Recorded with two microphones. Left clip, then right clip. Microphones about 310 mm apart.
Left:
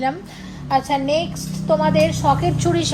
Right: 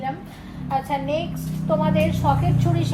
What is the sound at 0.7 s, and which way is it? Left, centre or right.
A woman's voice, left.